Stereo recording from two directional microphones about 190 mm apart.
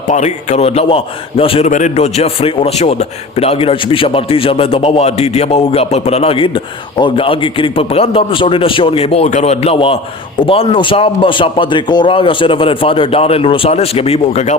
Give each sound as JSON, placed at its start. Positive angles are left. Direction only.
{"t": 0.1, "sound": "a man's voice", "side_deg": 35}